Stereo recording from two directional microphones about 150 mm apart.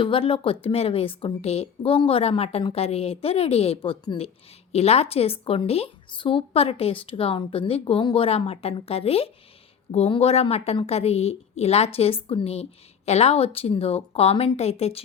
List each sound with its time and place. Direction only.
0.0 s a woman's voice: 35° left (ahead or behind)